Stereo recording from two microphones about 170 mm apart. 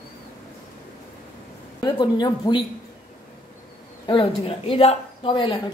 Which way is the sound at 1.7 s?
25° left (ahead or behind).